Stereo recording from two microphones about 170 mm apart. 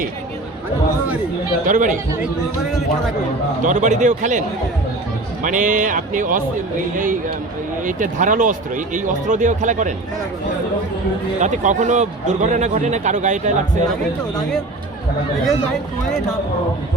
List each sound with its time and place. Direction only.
1.6 s speech: 50° right (ahead or behind)
3.6 s speech: 45° right (ahead or behind)
11.3 s speech: 45° right (ahead or behind)